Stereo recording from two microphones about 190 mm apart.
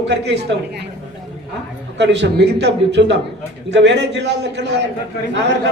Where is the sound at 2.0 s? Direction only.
65° right (ahead or behind).